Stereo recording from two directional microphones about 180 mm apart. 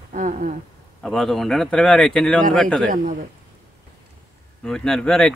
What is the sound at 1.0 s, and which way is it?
Speech, centre (ahead or behind).